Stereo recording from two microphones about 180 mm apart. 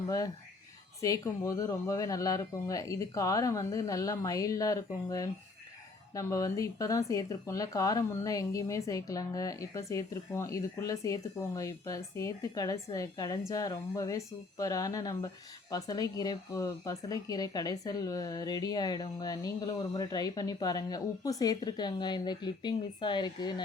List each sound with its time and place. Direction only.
1.0 s speech: 20° left (ahead or behind)